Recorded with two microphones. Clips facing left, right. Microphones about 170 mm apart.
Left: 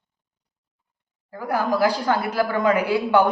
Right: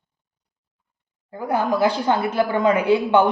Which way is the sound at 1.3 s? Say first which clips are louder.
Right 1 dB; 25° right (ahead or behind).